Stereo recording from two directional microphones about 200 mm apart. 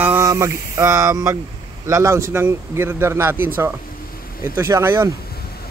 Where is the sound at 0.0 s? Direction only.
15° right (ahead or behind).